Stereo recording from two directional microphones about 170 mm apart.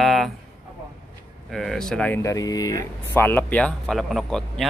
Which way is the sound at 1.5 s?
Centre (ahead or behind).